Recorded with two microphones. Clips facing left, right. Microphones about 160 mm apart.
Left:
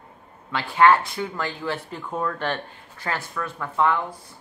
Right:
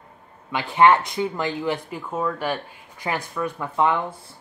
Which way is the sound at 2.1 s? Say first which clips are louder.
Right 1 dB; 5° right (ahead or behind).